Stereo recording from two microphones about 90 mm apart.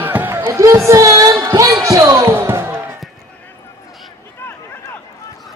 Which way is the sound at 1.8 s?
35° right (ahead or behind).